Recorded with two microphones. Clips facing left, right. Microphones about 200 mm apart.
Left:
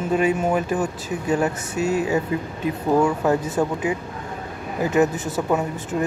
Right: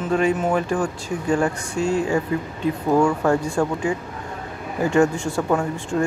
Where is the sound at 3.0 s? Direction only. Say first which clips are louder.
Right 1 dB; 5° left (ahead or behind).